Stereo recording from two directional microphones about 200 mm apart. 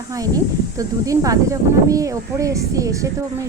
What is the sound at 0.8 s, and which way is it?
A woman's voice, 15° right (ahead or behind).